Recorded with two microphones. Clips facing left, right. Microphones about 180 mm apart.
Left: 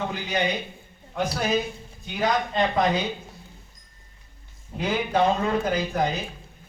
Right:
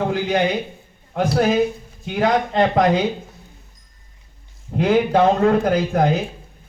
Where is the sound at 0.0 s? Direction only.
65° right (ahead or behind).